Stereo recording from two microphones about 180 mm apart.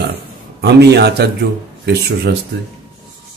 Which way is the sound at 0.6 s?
65° right (ahead or behind).